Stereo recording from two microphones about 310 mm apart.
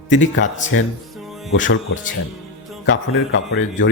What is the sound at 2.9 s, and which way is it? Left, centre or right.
Speech, left.